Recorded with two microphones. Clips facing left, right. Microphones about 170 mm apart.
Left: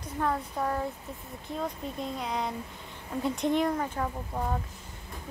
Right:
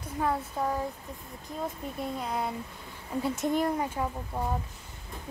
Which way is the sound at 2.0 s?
5° right (ahead or behind).